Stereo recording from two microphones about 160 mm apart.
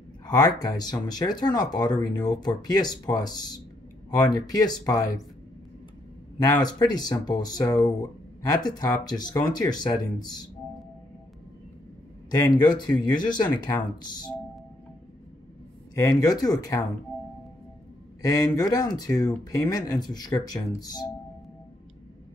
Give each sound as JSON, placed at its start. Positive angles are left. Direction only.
{"t": 0.3, "sound": "speech", "side_deg": 25}
{"t": 6.3, "sound": "speech", "side_deg": 25}
{"t": 12.3, "sound": "speech", "side_deg": 25}
{"t": 15.9, "sound": "speech", "side_deg": 20}
{"t": 18.2, "sound": "speech", "side_deg": 20}